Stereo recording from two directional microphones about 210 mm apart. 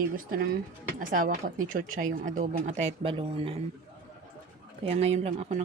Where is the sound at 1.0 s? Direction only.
40° right (ahead or behind).